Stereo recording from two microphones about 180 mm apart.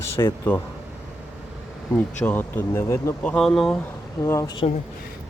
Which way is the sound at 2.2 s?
10° left (ahead or behind).